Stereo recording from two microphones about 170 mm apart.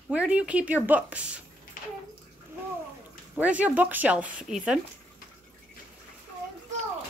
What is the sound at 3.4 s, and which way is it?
Speech, 10° right (ahead or behind).